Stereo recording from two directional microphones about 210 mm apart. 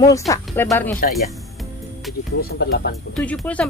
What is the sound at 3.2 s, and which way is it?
Speech, 5° left (ahead or behind).